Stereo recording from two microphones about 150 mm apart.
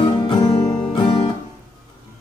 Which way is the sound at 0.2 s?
25° left (ahead or behind).